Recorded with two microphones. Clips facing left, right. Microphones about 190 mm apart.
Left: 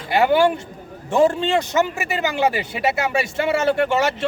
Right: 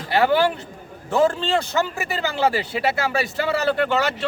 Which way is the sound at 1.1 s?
15° left (ahead or behind).